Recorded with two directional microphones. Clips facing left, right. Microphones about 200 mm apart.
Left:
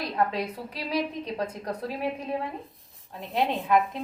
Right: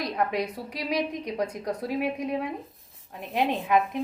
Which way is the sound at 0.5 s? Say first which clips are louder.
Right 1 dB; 15° right (ahead or behind).